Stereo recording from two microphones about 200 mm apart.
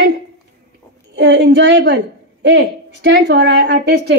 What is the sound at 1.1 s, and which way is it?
A woman's voice, 55° right (ahead or behind).